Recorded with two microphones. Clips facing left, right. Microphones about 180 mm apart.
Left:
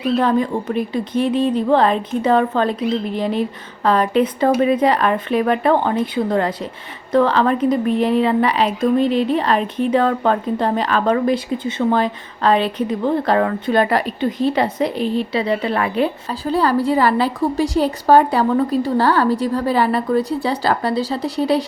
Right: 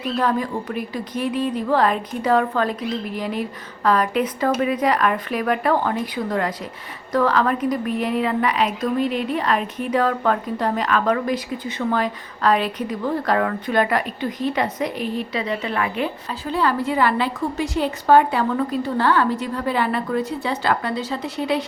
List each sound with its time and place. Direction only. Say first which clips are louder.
0.2 s a woman's voice: left 4 dB; 25° left (ahead or behind)